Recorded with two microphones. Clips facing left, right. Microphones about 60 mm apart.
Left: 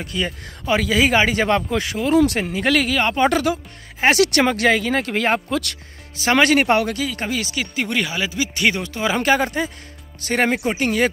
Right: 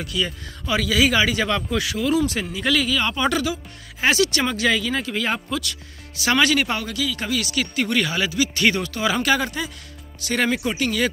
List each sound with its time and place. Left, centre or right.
0.0 s speech: left
2.1 s speech: left